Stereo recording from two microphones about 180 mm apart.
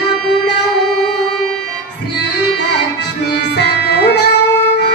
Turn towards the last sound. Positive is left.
turn(degrees=65)  # may be behind; listen again after turning